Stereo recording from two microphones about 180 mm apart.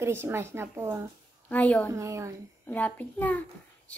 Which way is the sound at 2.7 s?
10° left (ahead or behind).